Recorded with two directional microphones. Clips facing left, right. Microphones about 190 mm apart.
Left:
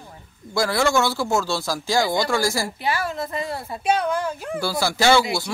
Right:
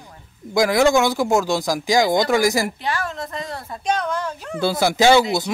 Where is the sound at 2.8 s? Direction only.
5° left (ahead or behind).